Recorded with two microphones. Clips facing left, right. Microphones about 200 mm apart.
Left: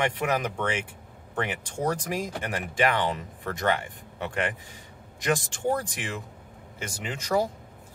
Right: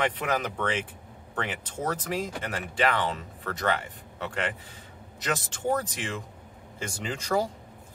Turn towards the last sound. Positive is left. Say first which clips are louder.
# left 1 dB
turn(degrees=5)  # may be behind; listen again after turning